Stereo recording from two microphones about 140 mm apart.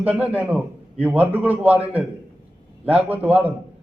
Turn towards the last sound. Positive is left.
turn(degrees=-10)  # may be behind; listen again after turning